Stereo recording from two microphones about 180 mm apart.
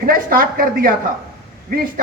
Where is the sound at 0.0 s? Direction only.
55° right (ahead or behind).